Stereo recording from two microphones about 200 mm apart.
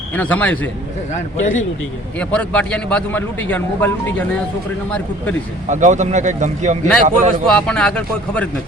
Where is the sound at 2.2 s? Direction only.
5° left (ahead or behind).